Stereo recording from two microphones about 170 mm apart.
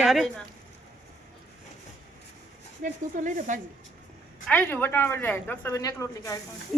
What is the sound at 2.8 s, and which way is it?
Speech, 50° right (ahead or behind).